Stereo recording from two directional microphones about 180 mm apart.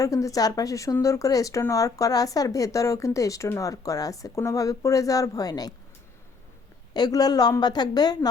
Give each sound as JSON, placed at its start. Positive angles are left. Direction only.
{"t": 0.0, "sound": "speech", "side_deg": 20}
{"t": 6.9, "sound": "speech", "side_deg": 20}